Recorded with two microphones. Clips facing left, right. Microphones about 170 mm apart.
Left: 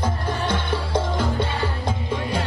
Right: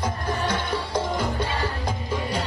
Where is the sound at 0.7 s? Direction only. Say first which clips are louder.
Left 2 dB; 25° left (ahead or behind).